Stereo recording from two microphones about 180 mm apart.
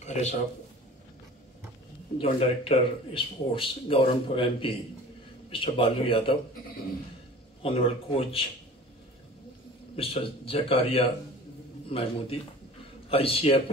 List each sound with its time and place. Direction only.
0.0 s a sound: 40° left (ahead or behind)
2.1 s speech: 30° left (ahead or behind)
7.6 s a man's voice: 30° left (ahead or behind)
9.9 s a man's voice: 30° left (ahead or behind)